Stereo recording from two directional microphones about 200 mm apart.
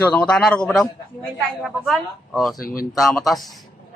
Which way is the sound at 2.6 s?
45° left (ahead or behind).